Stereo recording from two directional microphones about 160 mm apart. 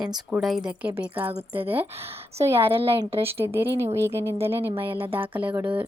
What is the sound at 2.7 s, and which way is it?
Speech, 35° right (ahead or behind).